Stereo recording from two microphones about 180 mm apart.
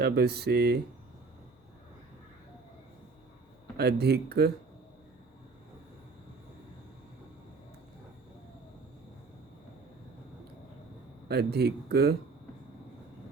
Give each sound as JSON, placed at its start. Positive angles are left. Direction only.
{"t": 0.0, "sound": "speech", "side_deg": -65}
{"t": 3.8, "sound": "speech", "side_deg": -65}
{"t": 11.3, "sound": "speech", "side_deg": -65}